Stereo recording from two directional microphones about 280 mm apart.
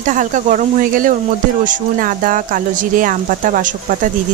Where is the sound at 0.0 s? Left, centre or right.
Right.